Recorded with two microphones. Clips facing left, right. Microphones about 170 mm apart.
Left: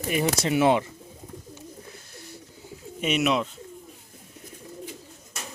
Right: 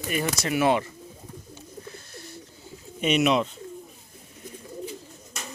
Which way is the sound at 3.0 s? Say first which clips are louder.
Right 2 dB; 5° left (ahead or behind).